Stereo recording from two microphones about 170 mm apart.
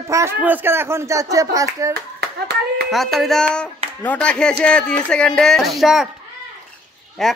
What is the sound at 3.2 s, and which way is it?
Speech, 5° left (ahead or behind).